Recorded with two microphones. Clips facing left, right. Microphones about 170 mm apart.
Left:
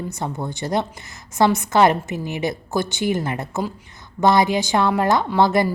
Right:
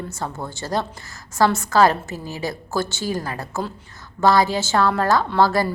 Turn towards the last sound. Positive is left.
turn(degrees=20)  # may be behind; listen again after turning